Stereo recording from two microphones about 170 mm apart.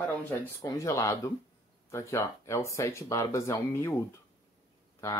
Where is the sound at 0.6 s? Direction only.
20° left (ahead or behind).